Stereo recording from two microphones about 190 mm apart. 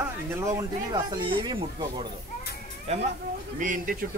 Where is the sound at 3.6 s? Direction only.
45° right (ahead or behind).